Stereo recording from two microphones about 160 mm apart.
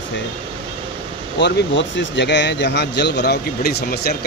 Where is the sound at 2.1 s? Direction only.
90° left.